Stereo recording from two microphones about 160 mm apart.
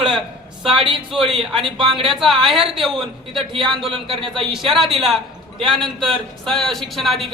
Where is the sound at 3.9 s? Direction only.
35° right (ahead or behind).